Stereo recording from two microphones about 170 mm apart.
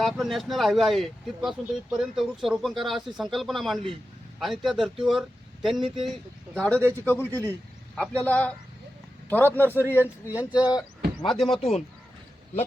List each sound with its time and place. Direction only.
0.0 s a man's voice: centre (ahead or behind)
9.7 s speech: 10° right (ahead or behind)
10.6 s speech: 20° left (ahead or behind)
11.3 s speech: centre (ahead or behind)